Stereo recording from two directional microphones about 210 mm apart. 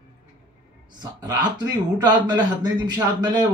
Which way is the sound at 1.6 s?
20° right (ahead or behind).